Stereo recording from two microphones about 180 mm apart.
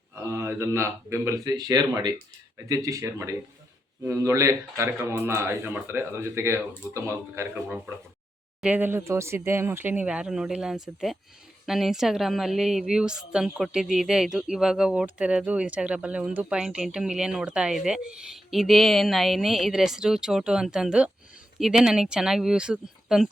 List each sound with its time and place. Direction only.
0.2 s a woman's voice: 15° right (ahead or behind)